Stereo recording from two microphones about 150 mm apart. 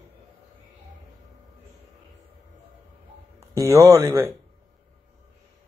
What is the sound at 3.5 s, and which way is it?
Speech, 20° right (ahead or behind).